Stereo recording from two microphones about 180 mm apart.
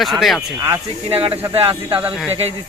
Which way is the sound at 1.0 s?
35° right (ahead or behind).